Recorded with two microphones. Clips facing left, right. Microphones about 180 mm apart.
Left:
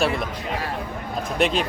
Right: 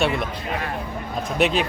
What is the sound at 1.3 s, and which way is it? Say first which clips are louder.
Speech: right 1 dB; centre (ahead or behind).